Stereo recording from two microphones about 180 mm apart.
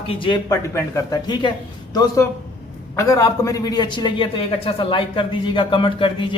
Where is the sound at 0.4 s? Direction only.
15° left (ahead or behind).